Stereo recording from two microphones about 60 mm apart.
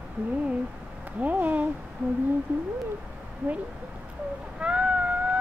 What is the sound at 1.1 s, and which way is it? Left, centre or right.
Speech, right.